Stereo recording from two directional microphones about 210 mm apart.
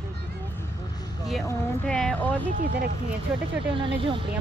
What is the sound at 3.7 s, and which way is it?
Speech, 25° right (ahead or behind).